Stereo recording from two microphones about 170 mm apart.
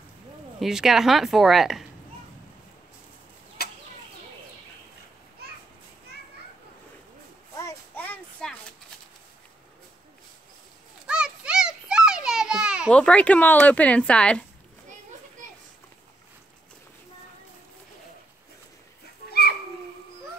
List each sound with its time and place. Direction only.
0.6 s a woman's voice: centre (ahead or behind)
5.4 s children playing: 65° right (ahead or behind)
7.5 s a sound: 15° left (ahead or behind)
11.1 s children playing: 5° right (ahead or behind)
12.9 s speech: 5° left (ahead or behind)
15.4 s a sound: 50° right (ahead or behind)